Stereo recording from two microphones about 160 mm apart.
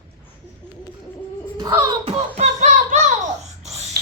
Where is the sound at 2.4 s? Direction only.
50° right (ahead or behind).